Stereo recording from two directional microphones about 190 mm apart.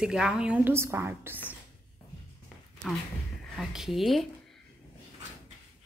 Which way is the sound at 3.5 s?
Centre (ahead or behind).